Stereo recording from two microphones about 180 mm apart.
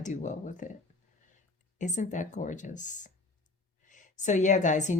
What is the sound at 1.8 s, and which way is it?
Speech, 40° left (ahead or behind).